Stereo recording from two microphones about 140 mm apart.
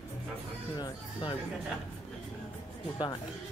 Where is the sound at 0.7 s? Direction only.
30° left (ahead or behind).